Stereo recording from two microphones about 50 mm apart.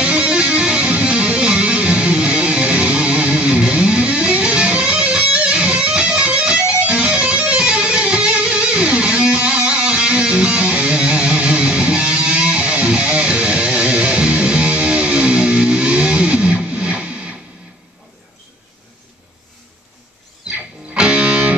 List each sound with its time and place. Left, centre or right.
0.0 s music: right
20.9 s music: centre